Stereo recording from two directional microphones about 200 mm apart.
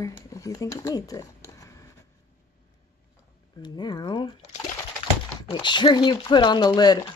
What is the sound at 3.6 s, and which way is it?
Speech, 20° left (ahead or behind).